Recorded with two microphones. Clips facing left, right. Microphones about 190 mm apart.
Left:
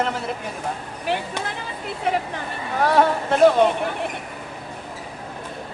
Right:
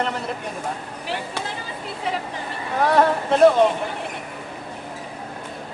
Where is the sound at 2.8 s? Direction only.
Centre (ahead or behind).